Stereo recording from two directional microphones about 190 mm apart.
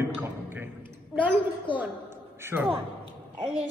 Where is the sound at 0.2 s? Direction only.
10° right (ahead or behind).